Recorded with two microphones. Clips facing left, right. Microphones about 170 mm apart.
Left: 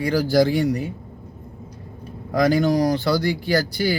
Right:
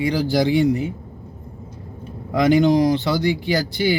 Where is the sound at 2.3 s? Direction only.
20° right (ahead or behind).